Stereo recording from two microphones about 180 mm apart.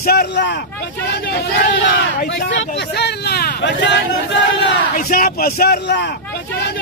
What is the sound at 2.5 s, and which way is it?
Speech, 80° left.